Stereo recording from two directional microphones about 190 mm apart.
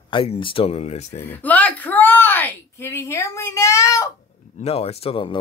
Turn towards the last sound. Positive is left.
turn(degrees=30)  # may be behind; listen again after turning